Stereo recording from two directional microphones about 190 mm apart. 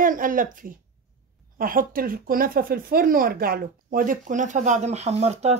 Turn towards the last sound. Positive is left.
turn(degrees=-35)  # may be behind; listen again after turning